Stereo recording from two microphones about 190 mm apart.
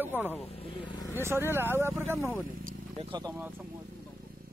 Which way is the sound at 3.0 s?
25° right (ahead or behind).